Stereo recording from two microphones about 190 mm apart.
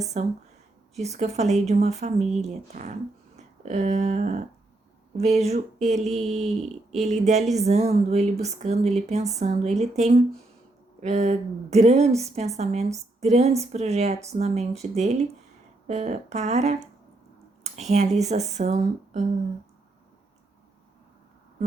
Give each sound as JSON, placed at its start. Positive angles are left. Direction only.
{"t": 0.1, "sound": "speech", "side_deg": -35}